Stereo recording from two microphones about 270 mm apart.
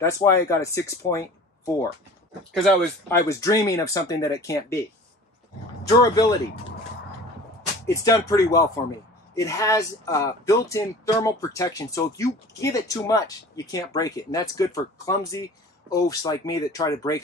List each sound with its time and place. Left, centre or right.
0.0 s speech: centre
3.1 s speech: centre
5.9 s speech: centre
7.8 s speech: centre